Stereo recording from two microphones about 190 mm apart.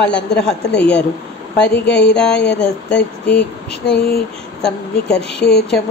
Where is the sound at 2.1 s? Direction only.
5° left (ahead or behind).